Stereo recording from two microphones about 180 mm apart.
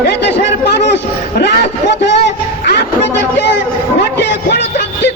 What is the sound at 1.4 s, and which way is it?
Speech, 70° left (ahead or behind).